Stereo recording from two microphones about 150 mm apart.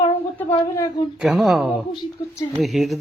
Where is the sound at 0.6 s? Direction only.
25° left (ahead or behind).